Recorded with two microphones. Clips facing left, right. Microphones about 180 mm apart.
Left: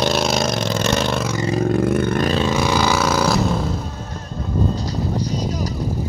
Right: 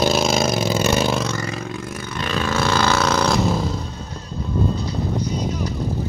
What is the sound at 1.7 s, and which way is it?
Vehicle, 60° left (ahead or behind).